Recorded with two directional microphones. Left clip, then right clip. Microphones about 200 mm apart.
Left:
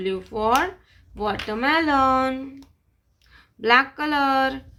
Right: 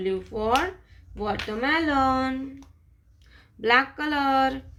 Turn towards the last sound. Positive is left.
turn(degrees=15)  # may be behind; listen again after turning